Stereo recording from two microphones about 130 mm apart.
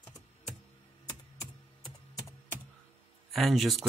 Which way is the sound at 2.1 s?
20° left (ahead or behind).